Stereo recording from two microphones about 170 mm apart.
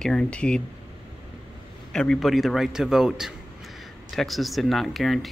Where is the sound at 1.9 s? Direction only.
5° left (ahead or behind).